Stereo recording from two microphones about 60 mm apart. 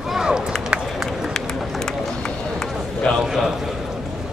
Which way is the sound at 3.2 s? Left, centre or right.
Centre.